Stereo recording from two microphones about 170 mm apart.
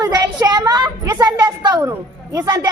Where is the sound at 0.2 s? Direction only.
25° right (ahead or behind).